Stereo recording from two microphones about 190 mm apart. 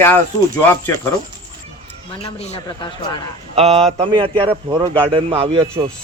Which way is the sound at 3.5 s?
30° right (ahead or behind).